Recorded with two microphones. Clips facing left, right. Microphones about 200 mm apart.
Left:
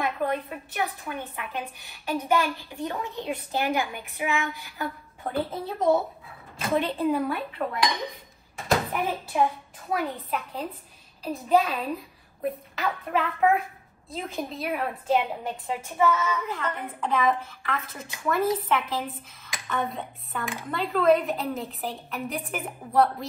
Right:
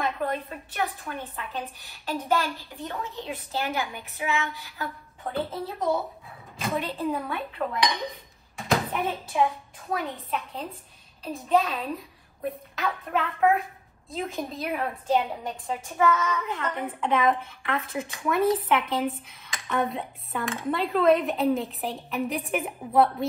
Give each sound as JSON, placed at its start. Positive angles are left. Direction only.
{"t": 0.7, "sound": "a woman's voice", "side_deg": 15}
{"t": 5.2, "sound": "a woman's voice", "side_deg": 0}
{"t": 6.8, "sound": "a woman's voice", "side_deg": 0}
{"t": 8.5, "sound": "a sound", "side_deg": 0}
{"t": 9.8, "sound": "a woman's voice", "side_deg": 0}